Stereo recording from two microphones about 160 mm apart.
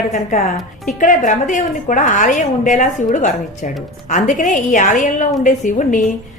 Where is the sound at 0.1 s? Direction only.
45° left (ahead or behind).